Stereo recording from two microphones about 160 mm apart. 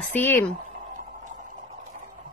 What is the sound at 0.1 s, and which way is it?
Speech, 10° left (ahead or behind).